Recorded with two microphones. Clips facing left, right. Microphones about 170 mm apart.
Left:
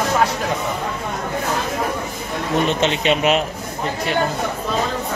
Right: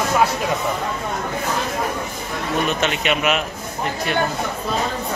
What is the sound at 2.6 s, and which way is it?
Speech, 25° left (ahead or behind).